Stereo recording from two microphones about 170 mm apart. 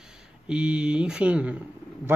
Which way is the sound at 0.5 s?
5° right (ahead or behind).